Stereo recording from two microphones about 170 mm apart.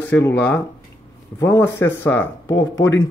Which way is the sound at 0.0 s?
10° left (ahead or behind).